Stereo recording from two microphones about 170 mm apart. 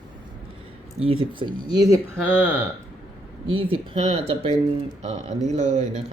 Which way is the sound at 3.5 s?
30° right (ahead or behind).